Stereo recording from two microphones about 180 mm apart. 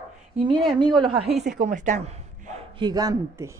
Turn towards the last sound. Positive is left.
turn(degrees=-20)  # may be behind; listen again after turning